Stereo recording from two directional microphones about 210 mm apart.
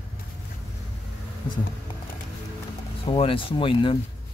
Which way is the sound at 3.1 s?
25° left (ahead or behind).